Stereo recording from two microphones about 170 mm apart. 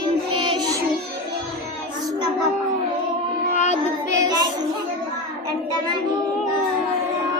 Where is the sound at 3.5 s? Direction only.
45° left (ahead or behind).